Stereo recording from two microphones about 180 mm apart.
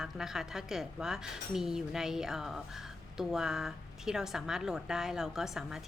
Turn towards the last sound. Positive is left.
turn(degrees=0)  # may be behind; listen again after turning